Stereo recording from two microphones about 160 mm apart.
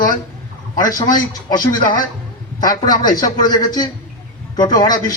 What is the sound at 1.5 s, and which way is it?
Speech, 60° left (ahead or behind).